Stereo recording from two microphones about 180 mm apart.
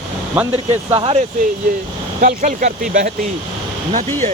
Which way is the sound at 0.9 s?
30° right (ahead or behind).